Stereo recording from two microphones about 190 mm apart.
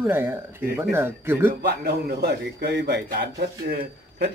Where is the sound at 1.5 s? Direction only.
55° right (ahead or behind).